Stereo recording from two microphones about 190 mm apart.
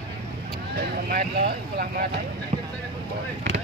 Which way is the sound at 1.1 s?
50° right (ahead or behind).